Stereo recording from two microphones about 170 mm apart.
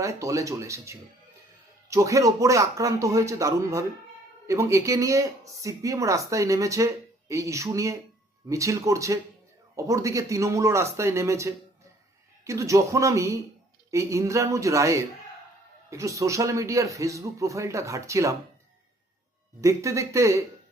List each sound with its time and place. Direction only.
0.0 s a man's voice: 20° right (ahead or behind)
19.6 s a man's voice: 20° right (ahead or behind)